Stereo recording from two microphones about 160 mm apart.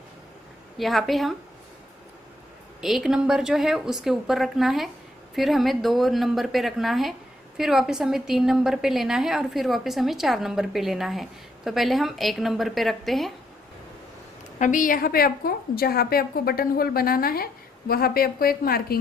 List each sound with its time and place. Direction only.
0.7 s a woman's voice: centre (ahead or behind)
2.8 s a woman's voice: centre (ahead or behind)
14.6 s a woman's voice: 55° left (ahead or behind)